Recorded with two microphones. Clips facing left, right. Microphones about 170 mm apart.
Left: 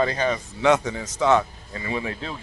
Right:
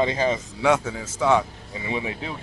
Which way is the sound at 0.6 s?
10° right (ahead or behind).